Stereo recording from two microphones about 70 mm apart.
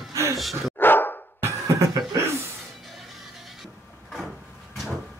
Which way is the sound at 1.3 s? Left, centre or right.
Right.